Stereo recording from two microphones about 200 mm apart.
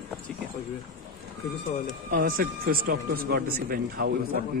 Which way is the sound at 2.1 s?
45° right (ahead or behind).